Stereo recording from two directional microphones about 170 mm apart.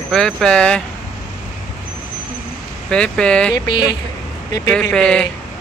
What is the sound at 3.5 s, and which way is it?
Speech, 25° left (ahead or behind).